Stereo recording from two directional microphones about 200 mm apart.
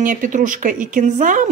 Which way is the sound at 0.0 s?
40° right (ahead or behind).